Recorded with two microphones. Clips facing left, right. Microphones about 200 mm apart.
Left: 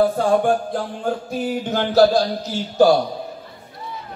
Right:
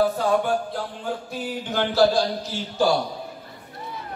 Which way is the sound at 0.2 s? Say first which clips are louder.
Left 4 dB; 50° left (ahead or behind).